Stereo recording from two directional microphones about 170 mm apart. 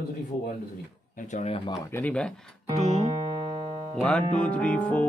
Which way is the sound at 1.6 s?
15° left (ahead or behind).